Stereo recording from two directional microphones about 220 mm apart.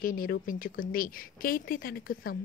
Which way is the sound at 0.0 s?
40° left (ahead or behind).